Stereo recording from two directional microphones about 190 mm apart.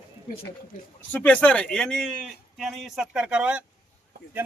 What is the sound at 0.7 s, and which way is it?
Speech, 45° left (ahead or behind).